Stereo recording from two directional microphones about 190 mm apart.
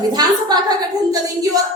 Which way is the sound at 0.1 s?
20° right (ahead or behind).